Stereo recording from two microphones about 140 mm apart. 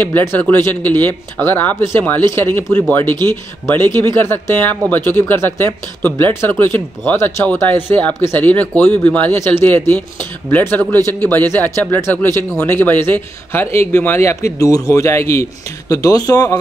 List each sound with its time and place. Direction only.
0.0 s speech: 15° left (ahead or behind)
11.0 s a man's voice: 30° right (ahead or behind)
11.5 s speech: 15° left (ahead or behind)